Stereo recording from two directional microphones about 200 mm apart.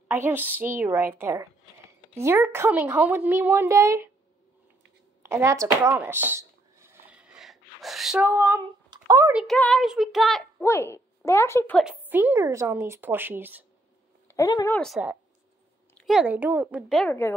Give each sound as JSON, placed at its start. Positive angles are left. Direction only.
{"t": 0.1, "sound": "speech", "side_deg": -10}
{"t": 5.2, "sound": "a sound", "side_deg": -15}
{"t": 9.3, "sound": "child singing", "side_deg": -5}
{"t": 10.6, "sound": "speech", "side_deg": 10}
{"t": 11.8, "sound": "speech", "side_deg": -10}
{"t": 14.2, "sound": "speech", "side_deg": 15}
{"t": 16.0, "sound": "speech", "side_deg": -5}
{"t": 17.0, "sound": "a woman's voice", "side_deg": 10}